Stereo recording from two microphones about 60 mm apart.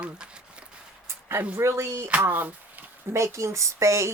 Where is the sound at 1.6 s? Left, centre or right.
Right.